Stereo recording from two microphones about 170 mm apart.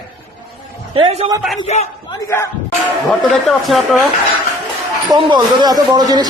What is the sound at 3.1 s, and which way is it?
Speech, centre (ahead or behind).